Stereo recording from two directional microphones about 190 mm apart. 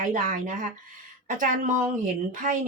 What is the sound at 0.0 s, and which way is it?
Speech, 45° right (ahead or behind).